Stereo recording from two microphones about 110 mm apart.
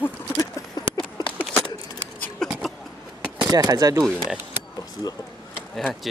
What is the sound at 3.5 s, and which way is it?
Speech, 35° right (ahead or behind).